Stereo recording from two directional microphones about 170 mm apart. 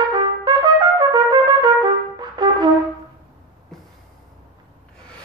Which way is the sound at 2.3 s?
25° right (ahead or behind).